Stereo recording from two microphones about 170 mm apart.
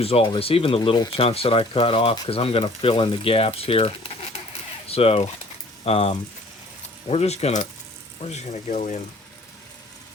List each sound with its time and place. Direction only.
0.0 s speech: 35° left (ahead or behind)